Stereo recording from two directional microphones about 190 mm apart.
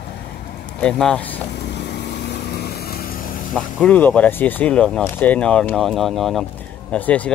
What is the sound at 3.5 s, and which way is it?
Speech, 5° left (ahead or behind).